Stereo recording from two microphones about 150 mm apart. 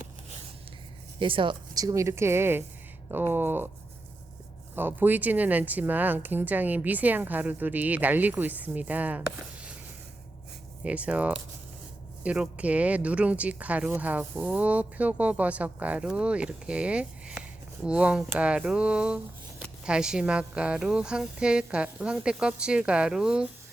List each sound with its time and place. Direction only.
1.2 s speech: 35° right (ahead or behind); by 3.7 s 15° right (ahead or behind)
4.7 s speech: 15° right (ahead or behind)
10.8 s speech: 10° right (ahead or behind)